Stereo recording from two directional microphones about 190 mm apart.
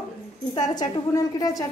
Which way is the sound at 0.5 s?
20° left (ahead or behind).